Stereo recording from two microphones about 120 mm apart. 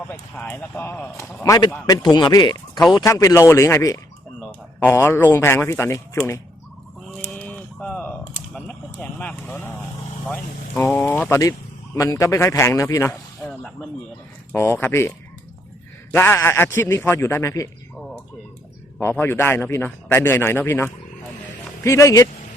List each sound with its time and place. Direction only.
0.1 s a man's voice: 15° left (ahead or behind)
1.5 s speech: 35° left (ahead or behind)
2.9 s a man's voice: 25° left (ahead or behind)
7.3 s a sound: 10° left (ahead or behind)
8.5 s vehicle: 10° left (ahead or behind)
10.2 s a man's voice: 15° left (ahead or behind)
13.4 s snake: 5° left (ahead or behind)
14.5 s a man's voice: 20° left (ahead or behind)
16.1 s a man's voice: 15° left (ahead or behind)
18.9 s a man's voice: 15° left (ahead or behind)